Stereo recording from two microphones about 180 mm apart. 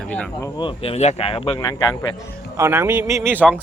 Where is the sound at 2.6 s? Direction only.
15° right (ahead or behind).